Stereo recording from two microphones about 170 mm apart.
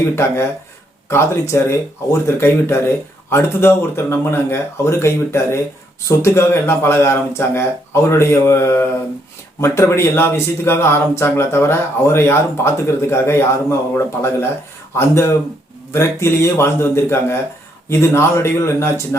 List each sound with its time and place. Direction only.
1.0 s speech: 15° left (ahead or behind)